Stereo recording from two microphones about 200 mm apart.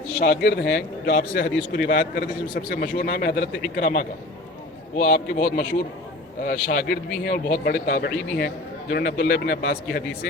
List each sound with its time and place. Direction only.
0.2 s a man's voice: 55° left (ahead or behind)